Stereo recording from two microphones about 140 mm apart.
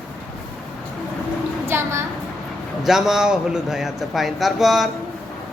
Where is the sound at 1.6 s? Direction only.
20° right (ahead or behind).